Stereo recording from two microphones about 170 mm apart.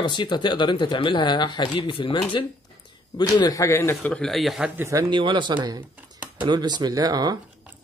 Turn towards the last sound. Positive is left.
turn(degrees=-25)  # may be behind; listen again after turning